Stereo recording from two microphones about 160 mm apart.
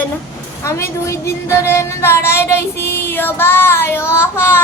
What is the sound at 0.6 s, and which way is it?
A woman's voice, 15° left (ahead or behind).